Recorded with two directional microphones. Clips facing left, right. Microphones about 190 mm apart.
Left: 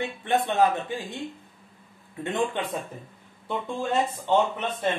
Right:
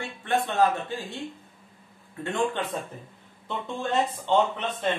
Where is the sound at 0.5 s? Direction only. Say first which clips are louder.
Even; 15° left (ahead or behind).